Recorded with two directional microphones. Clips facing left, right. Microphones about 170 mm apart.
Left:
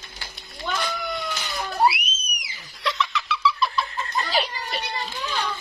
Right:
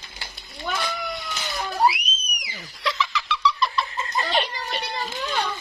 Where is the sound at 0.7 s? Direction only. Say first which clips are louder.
Left 1 dB; centre (ahead or behind).